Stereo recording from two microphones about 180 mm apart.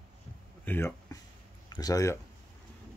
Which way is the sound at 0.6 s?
15° left (ahead or behind).